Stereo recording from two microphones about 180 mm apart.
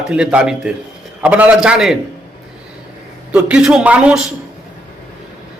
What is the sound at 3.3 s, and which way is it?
Speech, 5° right (ahead or behind).